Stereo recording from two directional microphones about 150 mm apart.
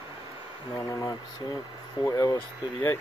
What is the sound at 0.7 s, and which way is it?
Speech, 25° left (ahead or behind).